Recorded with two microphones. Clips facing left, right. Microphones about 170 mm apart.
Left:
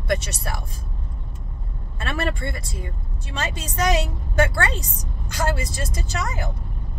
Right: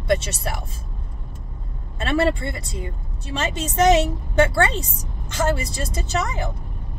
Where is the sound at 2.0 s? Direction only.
20° right (ahead or behind).